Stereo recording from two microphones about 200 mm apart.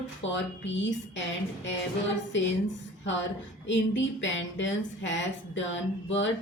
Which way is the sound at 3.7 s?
65° left (ahead or behind).